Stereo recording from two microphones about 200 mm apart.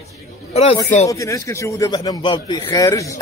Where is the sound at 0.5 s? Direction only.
30° left (ahead or behind).